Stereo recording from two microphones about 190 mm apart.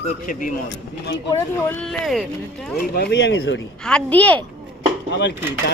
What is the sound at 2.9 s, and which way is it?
Speech, 60° left (ahead or behind).